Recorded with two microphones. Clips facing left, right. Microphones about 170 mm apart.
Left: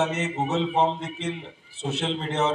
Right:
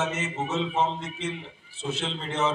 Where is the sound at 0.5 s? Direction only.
65° left (ahead or behind).